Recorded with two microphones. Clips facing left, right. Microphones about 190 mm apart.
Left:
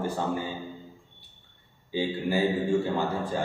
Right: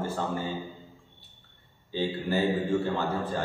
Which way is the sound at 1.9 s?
10° left (ahead or behind).